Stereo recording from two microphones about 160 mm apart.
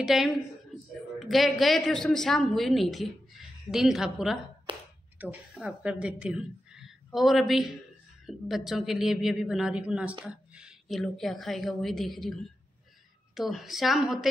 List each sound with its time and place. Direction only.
0.0 s a woman's voice: centre (ahead or behind)
4.7 s speech: 30° right (ahead or behind)
5.2 s a woman's voice: 5° right (ahead or behind)